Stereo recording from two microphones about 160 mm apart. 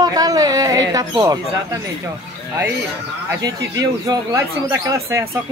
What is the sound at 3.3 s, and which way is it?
A woman's voice, 25° right (ahead or behind).